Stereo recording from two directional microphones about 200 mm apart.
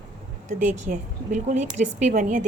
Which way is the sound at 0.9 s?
40° right (ahead or behind).